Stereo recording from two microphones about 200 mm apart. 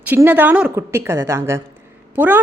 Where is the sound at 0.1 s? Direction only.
10° right (ahead or behind).